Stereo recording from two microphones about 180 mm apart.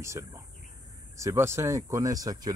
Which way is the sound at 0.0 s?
15° right (ahead or behind).